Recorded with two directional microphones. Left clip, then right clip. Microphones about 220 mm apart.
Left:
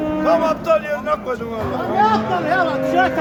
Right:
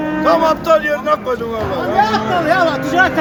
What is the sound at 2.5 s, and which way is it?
Speech, 55° right (ahead or behind).